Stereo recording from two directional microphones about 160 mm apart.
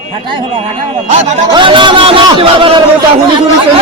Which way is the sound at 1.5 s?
30° right (ahead or behind).